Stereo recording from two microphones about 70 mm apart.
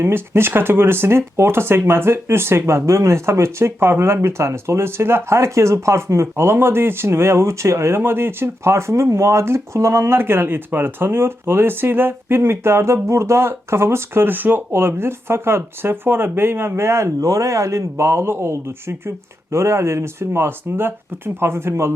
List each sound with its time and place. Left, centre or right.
0.0 s speech: right